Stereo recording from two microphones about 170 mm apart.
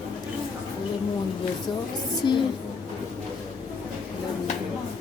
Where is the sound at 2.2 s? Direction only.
25° left (ahead or behind).